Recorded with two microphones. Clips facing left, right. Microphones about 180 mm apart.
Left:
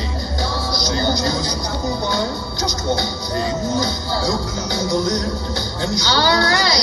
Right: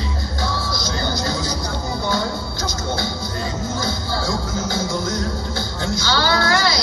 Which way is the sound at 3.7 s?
15° left (ahead or behind).